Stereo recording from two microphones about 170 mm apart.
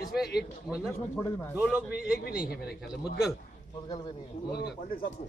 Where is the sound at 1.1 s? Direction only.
15° left (ahead or behind).